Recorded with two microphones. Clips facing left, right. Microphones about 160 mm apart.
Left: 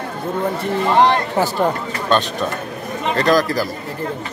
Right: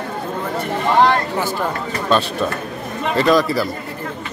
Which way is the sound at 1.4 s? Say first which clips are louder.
Left 4 dB; 35° left (ahead or behind).